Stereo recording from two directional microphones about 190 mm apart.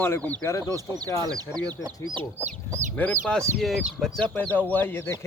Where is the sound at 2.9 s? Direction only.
5° left (ahead or behind).